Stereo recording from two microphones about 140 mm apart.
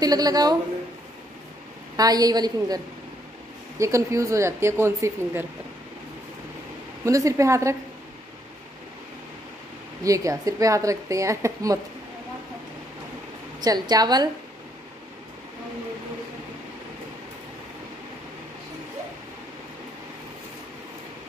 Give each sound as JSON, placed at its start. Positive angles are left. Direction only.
{"t": 0.0, "sound": "a woman's voice", "side_deg": -25}
{"t": 2.0, "sound": "a woman's voice", "side_deg": -25}
{"t": 7.1, "sound": "a woman's voice", "side_deg": -25}
{"t": 10.0, "sound": "a woman's voice", "side_deg": -25}
{"t": 13.6, "sound": "a woman's voice", "side_deg": -30}